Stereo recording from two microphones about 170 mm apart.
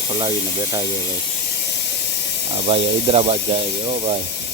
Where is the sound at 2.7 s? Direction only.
35° right (ahead or behind).